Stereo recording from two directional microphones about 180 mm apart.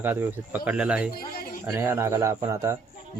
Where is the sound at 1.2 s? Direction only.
55° left (ahead or behind).